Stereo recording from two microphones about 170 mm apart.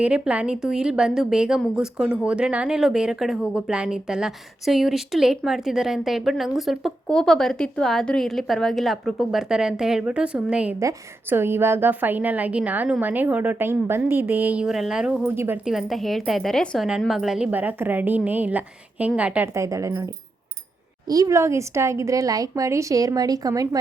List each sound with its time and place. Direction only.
0.0 s a woman's voice: 5° right (ahead or behind)
21.1 s a woman's voice: 20° right (ahead or behind)